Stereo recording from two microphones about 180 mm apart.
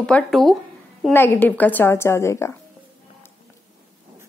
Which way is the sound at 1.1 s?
10° left (ahead or behind).